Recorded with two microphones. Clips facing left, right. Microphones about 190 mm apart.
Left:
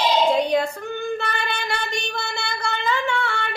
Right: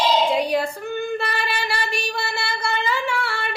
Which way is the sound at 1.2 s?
5° right (ahead or behind).